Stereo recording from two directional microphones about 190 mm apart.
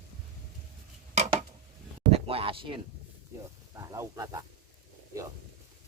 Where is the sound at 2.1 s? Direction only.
30° right (ahead or behind).